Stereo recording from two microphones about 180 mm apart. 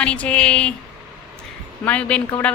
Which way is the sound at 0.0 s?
5° left (ahead or behind).